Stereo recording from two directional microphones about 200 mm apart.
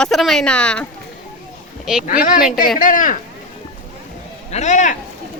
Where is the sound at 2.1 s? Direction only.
45° left (ahead or behind).